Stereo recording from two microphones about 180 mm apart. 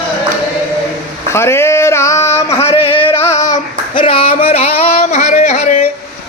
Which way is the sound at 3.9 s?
30° left (ahead or behind).